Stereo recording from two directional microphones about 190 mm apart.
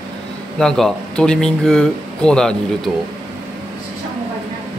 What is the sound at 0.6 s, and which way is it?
Speech, centre (ahead or behind).